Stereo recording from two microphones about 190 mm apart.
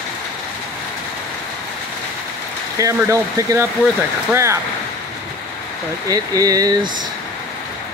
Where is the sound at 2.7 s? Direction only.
15° right (ahead or behind).